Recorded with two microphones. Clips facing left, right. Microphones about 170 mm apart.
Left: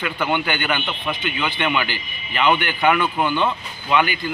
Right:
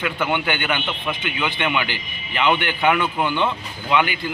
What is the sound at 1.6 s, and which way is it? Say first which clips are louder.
Speech: left 1 dB; 10° right (ahead or behind).